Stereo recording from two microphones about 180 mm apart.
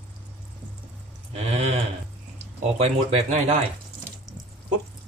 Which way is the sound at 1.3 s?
35° right (ahead or behind).